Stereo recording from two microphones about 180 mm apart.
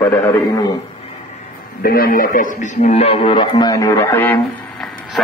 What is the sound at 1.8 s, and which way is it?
A man's voice, 55° left (ahead or behind).